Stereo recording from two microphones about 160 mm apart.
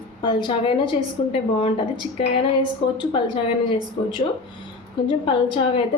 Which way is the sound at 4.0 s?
40° left (ahead or behind).